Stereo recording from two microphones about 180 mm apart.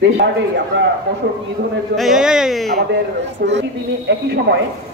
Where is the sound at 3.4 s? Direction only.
65° right (ahead or behind).